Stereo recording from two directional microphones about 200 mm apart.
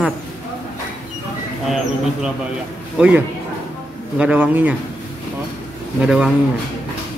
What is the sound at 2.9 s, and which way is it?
A man's voice, 5° right (ahead or behind).